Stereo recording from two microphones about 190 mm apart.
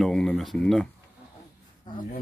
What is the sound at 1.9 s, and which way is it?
Speech, 25° left (ahead or behind).